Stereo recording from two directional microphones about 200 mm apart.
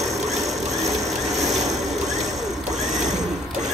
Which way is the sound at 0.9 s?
Centre (ahead or behind).